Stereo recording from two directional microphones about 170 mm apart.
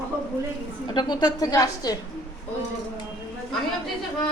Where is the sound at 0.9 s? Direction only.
25° left (ahead or behind).